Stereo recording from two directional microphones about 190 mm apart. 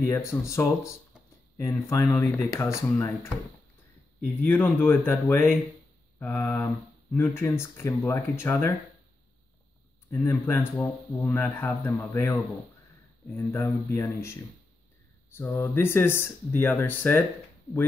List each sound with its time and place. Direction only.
0.0 s speech: 15° left (ahead or behind)
4.2 s speech: 10° left (ahead or behind)
10.1 s speech: 10° left (ahead or behind)